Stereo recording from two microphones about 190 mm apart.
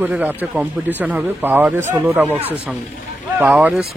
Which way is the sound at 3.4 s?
10° right (ahead or behind).